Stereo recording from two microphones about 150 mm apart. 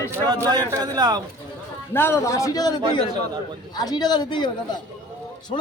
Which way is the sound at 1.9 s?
15° left (ahead or behind).